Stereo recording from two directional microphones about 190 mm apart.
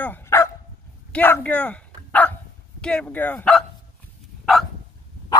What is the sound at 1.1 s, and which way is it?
Dog, 10° left (ahead or behind).